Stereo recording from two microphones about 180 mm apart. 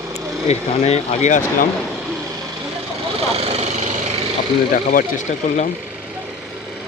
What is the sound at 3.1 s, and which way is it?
Vehicle, 35° right (ahead or behind).